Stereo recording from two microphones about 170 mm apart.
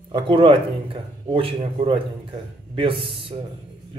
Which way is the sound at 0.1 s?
30° right (ahead or behind).